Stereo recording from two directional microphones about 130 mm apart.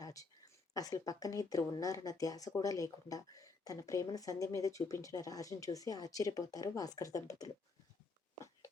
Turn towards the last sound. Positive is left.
turn(degrees=25)  # may be behind; listen again after turning